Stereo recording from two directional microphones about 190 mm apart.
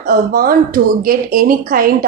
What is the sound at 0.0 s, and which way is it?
A woman's voice, 50° right (ahead or behind).